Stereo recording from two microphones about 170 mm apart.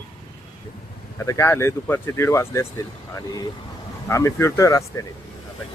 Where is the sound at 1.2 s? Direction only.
15° left (ahead or behind).